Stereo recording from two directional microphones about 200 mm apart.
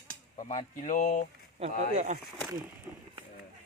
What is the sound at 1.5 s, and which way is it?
Speech, 35° right (ahead or behind).